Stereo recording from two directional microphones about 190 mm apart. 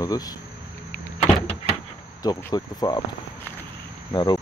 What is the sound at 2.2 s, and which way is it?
Speech, 20° left (ahead or behind).